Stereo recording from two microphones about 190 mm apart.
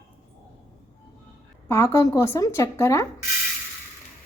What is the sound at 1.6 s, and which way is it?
A woman's voice, 15° left (ahead or behind).